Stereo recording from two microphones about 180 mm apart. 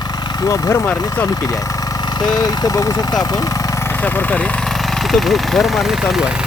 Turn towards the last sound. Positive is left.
turn(degrees=-5)  # may be behind; listen again after turning